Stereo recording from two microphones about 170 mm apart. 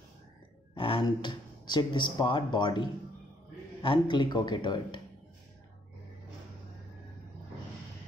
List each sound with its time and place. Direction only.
0.7 s speech: 30° left (ahead or behind)